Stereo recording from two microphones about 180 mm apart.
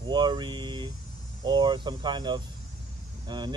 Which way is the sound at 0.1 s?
25° right (ahead or behind).